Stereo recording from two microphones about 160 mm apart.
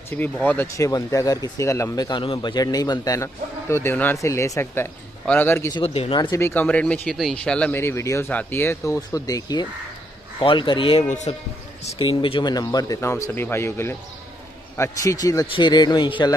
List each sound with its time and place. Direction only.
0.1 s speech: 10° left (ahead or behind)
5.9 s speech: 35° left (ahead or behind)
6.4 s speech: 10° left (ahead or behind); by 11.1 s 35° left (ahead or behind)
11.1 s speech: 45° left (ahead or behind)
11.8 s speech: 35° left (ahead or behind)